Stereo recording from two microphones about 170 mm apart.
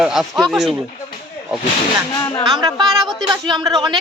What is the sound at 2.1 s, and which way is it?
Speech, 25° left (ahead or behind).